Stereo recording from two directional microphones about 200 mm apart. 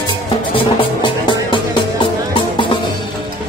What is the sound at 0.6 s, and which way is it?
Music, 25° left (ahead or behind).